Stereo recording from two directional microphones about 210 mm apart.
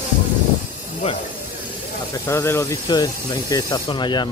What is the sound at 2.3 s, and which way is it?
Speech, 15° left (ahead or behind).